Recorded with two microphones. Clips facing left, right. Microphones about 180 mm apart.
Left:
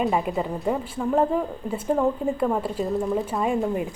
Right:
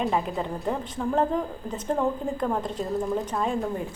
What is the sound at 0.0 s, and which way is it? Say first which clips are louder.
A woman's voice: left 3 dB; 5° left (ahead or behind).